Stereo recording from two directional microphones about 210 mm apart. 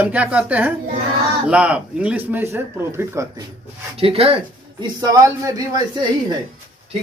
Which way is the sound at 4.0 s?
30° right (ahead or behind).